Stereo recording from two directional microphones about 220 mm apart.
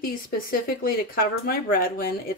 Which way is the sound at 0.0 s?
40° left (ahead or behind).